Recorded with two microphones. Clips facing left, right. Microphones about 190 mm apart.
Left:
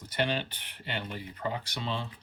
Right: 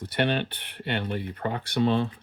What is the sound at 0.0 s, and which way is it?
Speech, 65° right (ahead or behind).